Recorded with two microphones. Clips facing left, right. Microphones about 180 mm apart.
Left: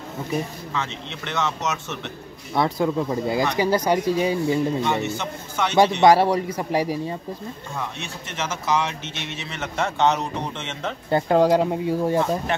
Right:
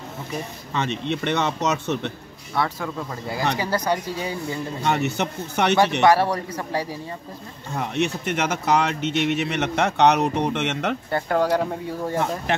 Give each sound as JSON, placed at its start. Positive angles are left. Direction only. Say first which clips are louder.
{"t": 0.7, "sound": "speech", "louder": "right 6 dB", "side_deg": -65}
{"t": 2.5, "sound": "speech", "louder": "left 5 dB", "side_deg": 15}
{"t": 5.0, "sound": "speech", "louder": "right 3 dB", "side_deg": -65}
{"t": 6.0, "sound": "speech", "louder": "left 2 dB", "side_deg": 15}
{"t": 7.7, "sound": "speech", "louder": "right 11 dB", "side_deg": -65}
{"t": 11.1, "sound": "speech", "louder": "left 5 dB", "side_deg": 20}